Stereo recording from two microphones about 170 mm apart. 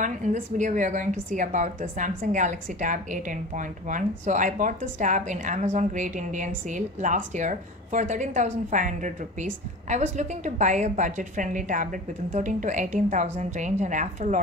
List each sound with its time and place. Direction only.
0.0 s a woman's voice: 45° right (ahead or behind)